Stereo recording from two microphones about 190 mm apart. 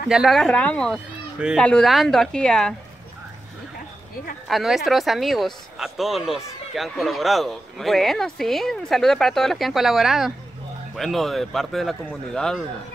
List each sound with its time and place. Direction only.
0.1 s speech: centre (ahead or behind)
4.5 s speech: centre (ahead or behind)